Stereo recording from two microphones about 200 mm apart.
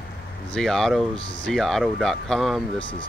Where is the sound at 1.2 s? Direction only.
25° left (ahead or behind).